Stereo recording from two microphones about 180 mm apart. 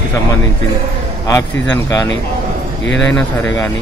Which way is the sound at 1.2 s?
20° left (ahead or behind).